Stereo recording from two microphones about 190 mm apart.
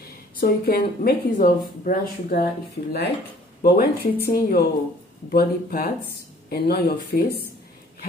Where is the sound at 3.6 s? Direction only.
50° left (ahead or behind).